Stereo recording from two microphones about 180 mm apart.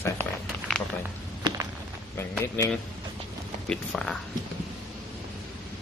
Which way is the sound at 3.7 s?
5° left (ahead or behind).